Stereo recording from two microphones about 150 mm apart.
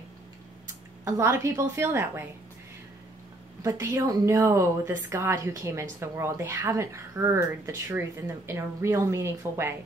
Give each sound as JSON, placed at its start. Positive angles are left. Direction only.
{"t": 1.0, "sound": "a woman's voice", "side_deg": -20}
{"t": 3.6, "sound": "a woman's voice", "side_deg": -20}